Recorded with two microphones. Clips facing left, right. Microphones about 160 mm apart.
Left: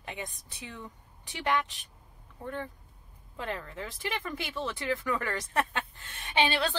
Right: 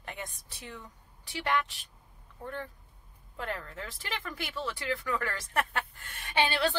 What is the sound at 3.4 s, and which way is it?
Speech, 20° left (ahead or behind).